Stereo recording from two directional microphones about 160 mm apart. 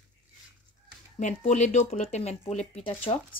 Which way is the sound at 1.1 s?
45° left (ahead or behind).